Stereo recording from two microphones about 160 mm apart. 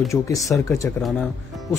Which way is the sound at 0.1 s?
20° left (ahead or behind).